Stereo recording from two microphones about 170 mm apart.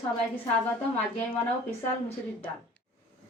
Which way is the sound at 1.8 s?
10° left (ahead or behind).